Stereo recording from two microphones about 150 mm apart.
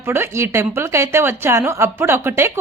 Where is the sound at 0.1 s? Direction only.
15° right (ahead or behind).